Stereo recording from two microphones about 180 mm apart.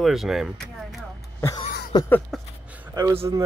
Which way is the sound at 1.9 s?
25° left (ahead or behind).